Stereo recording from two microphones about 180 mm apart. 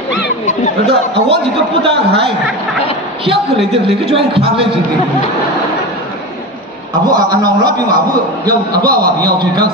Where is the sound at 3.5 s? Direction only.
30° right (ahead or behind).